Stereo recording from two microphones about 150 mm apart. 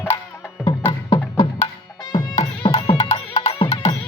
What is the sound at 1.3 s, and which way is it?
Music, 40° left (ahead or behind).